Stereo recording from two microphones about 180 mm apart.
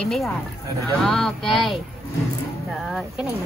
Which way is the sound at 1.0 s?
Centre (ahead or behind).